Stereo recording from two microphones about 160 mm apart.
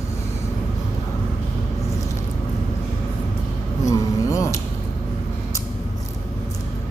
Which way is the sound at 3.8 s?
20° left (ahead or behind).